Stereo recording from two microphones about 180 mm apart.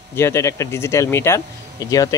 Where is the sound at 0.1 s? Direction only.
15° left (ahead or behind).